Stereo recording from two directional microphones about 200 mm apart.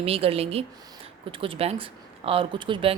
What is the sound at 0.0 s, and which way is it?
Speech, 30° right (ahead or behind).